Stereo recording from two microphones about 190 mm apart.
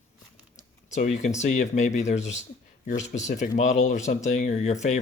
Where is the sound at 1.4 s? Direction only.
40° left (ahead or behind).